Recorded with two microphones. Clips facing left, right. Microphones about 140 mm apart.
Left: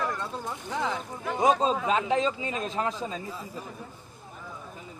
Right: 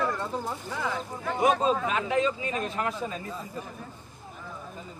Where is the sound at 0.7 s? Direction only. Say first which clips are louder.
Left 3 dB; 15° left (ahead or behind).